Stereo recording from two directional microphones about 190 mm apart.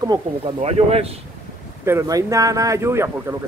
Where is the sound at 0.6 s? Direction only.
35° right (ahead or behind).